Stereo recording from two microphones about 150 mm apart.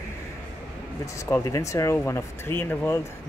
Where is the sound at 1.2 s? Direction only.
20° left (ahead or behind).